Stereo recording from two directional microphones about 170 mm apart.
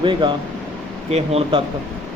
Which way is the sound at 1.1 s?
35° right (ahead or behind).